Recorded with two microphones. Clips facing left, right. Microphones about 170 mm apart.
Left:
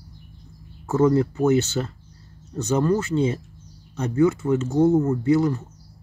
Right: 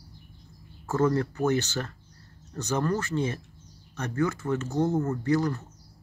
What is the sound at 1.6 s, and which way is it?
Speech, 25° left (ahead or behind).